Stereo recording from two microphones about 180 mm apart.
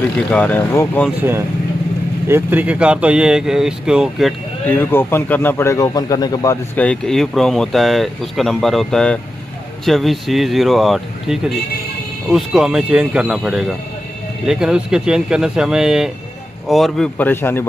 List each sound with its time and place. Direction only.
0.3 s speech: 10° left (ahead or behind)
2.2 s speech: 10° right (ahead or behind)
4.6 s speech: 10° left (ahead or behind)